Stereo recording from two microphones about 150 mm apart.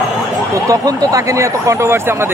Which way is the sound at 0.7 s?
20° right (ahead or behind).